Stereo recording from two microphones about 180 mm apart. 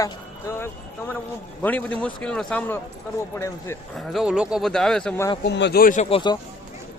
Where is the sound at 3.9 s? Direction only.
Centre (ahead or behind).